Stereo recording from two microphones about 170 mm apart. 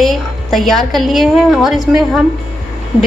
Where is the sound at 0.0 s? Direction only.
Centre (ahead or behind).